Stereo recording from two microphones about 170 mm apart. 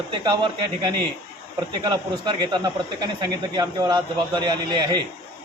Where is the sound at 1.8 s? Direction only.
25° right (ahead or behind).